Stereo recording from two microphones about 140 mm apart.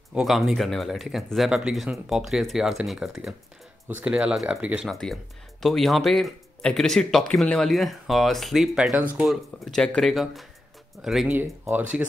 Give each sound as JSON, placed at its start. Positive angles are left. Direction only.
{"t": 0.1, "sound": "speech", "side_deg": 0}
{"t": 11.3, "sound": "speech", "side_deg": -15}